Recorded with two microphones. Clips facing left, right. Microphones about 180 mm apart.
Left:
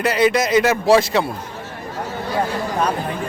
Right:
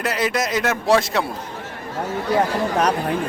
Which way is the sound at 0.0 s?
Centre (ahead or behind).